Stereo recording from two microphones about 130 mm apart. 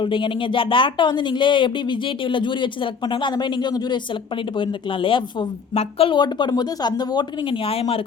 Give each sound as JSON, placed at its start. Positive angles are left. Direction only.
{"t": 0.0, "sound": "speech", "side_deg": 40}
{"t": 6.1, "sound": "speech", "side_deg": 35}